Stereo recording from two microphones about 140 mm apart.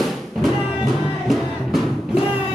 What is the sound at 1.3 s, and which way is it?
Music, centre (ahead or behind).